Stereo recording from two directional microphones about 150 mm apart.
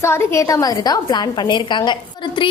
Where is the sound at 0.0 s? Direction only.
15° left (ahead or behind).